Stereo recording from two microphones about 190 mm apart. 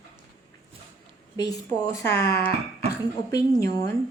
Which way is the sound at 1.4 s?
20° left (ahead or behind).